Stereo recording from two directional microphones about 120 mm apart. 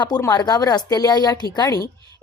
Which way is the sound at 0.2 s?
35° left (ahead or behind).